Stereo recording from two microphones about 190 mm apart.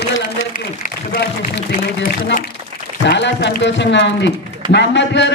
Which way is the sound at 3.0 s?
65° left (ahead or behind).